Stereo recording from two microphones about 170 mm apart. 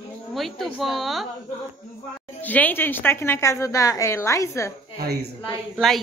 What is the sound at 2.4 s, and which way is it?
A woman's voice, 10° left (ahead or behind).